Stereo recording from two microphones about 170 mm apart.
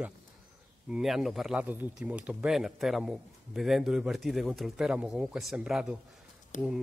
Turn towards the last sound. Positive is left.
turn(degrees=45)  # may be behind; listen again after turning